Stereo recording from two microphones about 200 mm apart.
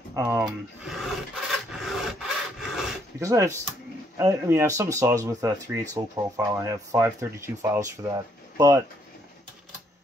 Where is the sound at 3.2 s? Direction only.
15° right (ahead or behind).